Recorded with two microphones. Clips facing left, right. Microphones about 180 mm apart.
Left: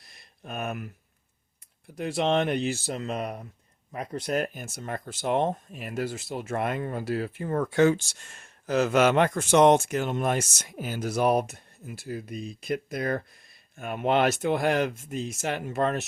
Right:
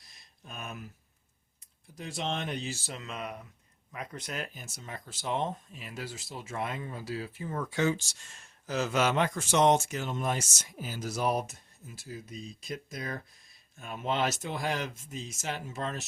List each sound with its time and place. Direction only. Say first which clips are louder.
0.0 s a sound: left 8 dB; 60° left (ahead or behind)
2.0 s speech: left 10 dB; 60° left (ahead or behind)
2.8 s speech: left 8 dB; 40° left (ahead or behind)
4.4 s speech: left 10 dB; 55° left (ahead or behind)